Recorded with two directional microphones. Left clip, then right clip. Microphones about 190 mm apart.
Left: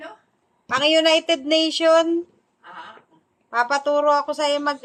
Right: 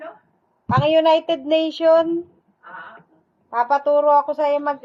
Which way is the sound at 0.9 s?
25° left (ahead or behind).